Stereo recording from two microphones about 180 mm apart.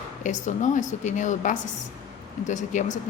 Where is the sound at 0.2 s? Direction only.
45° left (ahead or behind).